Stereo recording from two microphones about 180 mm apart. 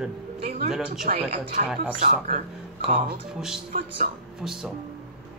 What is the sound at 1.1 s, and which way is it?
Speech, 35° right (ahead or behind).